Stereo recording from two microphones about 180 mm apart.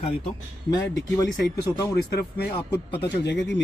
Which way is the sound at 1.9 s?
65° left (ahead or behind).